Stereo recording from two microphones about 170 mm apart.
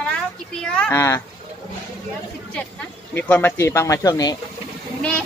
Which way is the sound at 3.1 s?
10° left (ahead or behind).